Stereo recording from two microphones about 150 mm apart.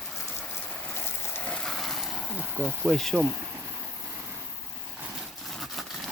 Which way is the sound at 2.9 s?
5° left (ahead or behind).